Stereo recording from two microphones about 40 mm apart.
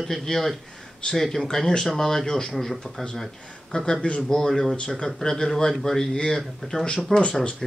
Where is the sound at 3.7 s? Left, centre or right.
Centre.